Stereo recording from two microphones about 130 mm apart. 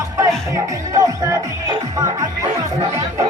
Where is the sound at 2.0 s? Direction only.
25° right (ahead or behind).